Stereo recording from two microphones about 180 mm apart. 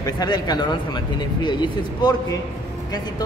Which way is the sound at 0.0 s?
20° left (ahead or behind).